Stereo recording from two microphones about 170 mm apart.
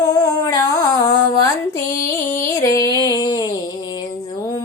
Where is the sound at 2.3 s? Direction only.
20° left (ahead or behind).